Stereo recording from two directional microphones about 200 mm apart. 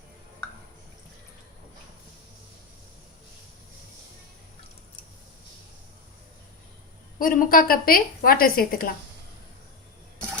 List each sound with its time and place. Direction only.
7.2 s a woman's voice: 45° left (ahead or behind)